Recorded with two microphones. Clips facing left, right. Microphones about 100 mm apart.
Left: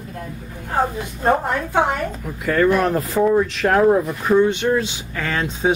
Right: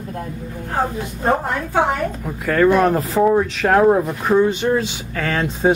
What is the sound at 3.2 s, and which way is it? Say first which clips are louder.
Speech: right 1 dB; 20° right (ahead or behind).